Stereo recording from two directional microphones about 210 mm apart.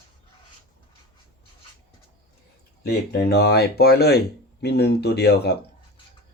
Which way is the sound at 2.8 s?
50° left (ahead or behind).